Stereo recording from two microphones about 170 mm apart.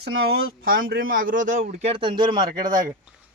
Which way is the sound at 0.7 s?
60° right (ahead or behind).